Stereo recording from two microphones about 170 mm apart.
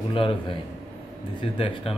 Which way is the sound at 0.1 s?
30° left (ahead or behind).